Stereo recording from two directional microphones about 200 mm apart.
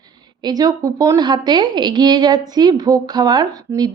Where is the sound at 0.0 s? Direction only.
20° right (ahead or behind).